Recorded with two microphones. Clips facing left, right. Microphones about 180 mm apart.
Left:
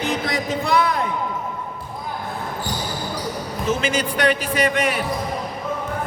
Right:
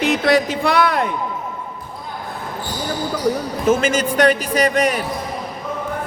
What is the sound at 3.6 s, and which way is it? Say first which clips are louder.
A man's voice: right 5 dB; 45° right (ahead or behind).